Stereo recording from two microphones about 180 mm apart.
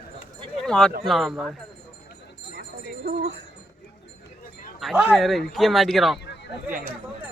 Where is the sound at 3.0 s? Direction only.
55° right (ahead or behind).